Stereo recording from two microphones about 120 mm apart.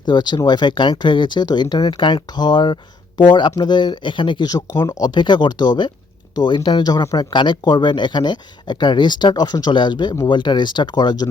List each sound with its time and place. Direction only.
0.1 s speech: 35° left (ahead or behind)